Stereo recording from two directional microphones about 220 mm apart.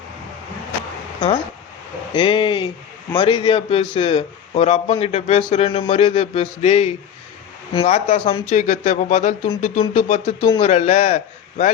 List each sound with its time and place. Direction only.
2.1 s a man's voice: 20° left (ahead or behind)